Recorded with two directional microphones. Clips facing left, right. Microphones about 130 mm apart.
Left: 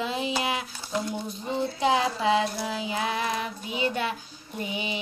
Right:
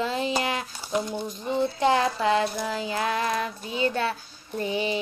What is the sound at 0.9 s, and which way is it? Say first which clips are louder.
Speech: right 3 dB; 20° right (ahead or behind).